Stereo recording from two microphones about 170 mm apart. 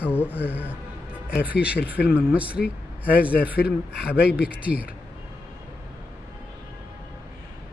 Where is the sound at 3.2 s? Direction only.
60° left (ahead or behind).